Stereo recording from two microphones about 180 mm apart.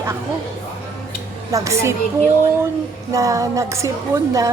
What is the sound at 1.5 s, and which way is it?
Speech, 15° right (ahead or behind).